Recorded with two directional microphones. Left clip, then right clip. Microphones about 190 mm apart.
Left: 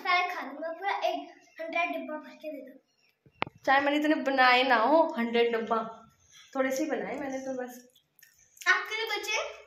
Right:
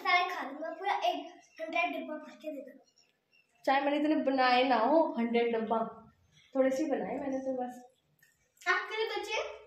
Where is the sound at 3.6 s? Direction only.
Centre (ahead or behind).